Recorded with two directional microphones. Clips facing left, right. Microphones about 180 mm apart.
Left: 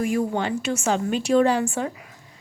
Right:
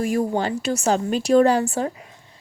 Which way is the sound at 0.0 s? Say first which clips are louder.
Right 2 dB; 35° right (ahead or behind).